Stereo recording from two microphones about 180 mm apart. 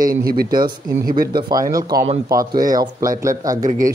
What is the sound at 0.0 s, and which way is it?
Speech, 55° right (ahead or behind).